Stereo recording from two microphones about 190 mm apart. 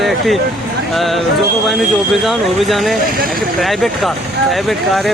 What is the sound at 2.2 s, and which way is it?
Speech, centre (ahead or behind).